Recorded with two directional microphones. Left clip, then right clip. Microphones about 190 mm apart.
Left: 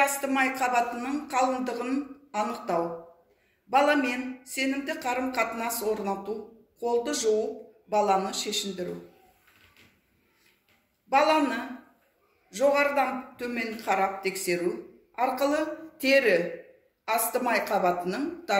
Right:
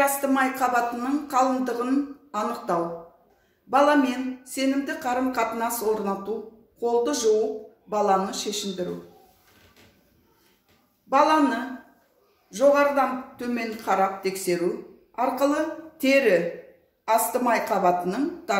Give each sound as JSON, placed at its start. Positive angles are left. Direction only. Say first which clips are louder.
{"t": 0.0, "sound": "a man's voice", "louder": "right 3 dB", "side_deg": -30}
{"t": 11.1, "sound": "a man's voice", "louder": "right 3 dB", "side_deg": -35}